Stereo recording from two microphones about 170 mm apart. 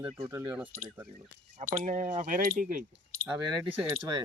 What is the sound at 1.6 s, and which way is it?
Speech, 55° right (ahead or behind).